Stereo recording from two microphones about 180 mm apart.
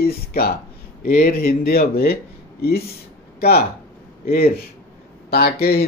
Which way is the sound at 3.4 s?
60° left (ahead or behind).